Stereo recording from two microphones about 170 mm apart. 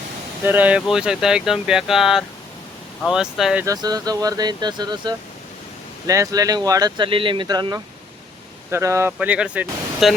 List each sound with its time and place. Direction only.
0.4 s speech: 10° right (ahead or behind)
3.7 s speech: 20° right (ahead or behind); by 10.2 s 5° right (ahead or behind)